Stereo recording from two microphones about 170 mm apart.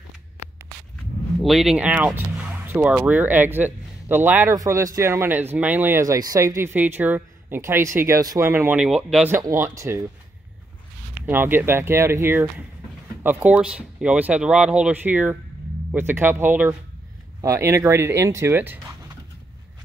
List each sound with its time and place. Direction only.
1.4 s speech: centre (ahead or behind)
9.3 s speech: 15° right (ahead or behind)
11.2 s speech: 10° right (ahead or behind)